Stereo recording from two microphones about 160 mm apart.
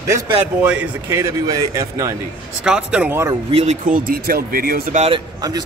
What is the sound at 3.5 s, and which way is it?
Speech, 40° right (ahead or behind).